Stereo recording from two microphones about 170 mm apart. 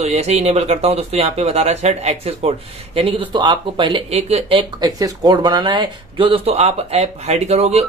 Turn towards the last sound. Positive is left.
turn(degrees=-40)  # may be behind; listen again after turning